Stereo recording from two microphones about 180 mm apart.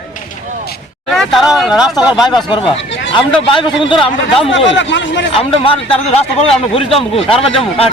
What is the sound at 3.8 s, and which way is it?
Speech, 30° left (ahead or behind).